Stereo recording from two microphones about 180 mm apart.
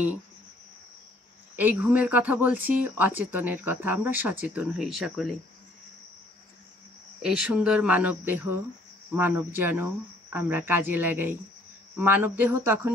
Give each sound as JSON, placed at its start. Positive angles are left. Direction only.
{"t": 1.6, "sound": "speech", "side_deg": -10}
{"t": 7.2, "sound": "speech", "side_deg": -5}